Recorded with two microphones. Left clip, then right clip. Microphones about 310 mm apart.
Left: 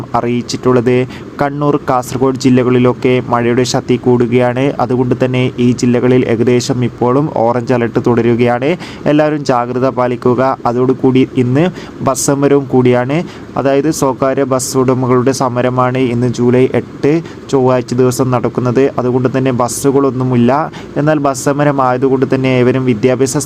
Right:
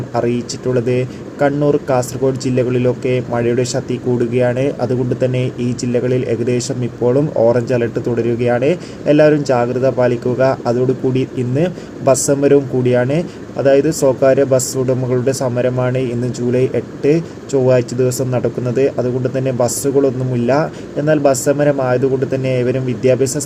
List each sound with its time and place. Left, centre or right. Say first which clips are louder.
0.2 s speech: left 2 dB; left